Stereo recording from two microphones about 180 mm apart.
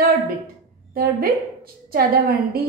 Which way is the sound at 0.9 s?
55° right (ahead or behind).